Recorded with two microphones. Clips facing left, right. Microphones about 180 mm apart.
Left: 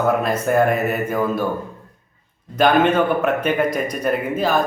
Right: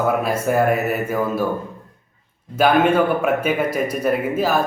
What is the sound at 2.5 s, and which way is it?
A man's voice, 10° right (ahead or behind).